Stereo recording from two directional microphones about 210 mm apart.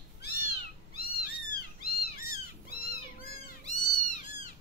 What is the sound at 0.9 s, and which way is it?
Cat, 45° left (ahead or behind).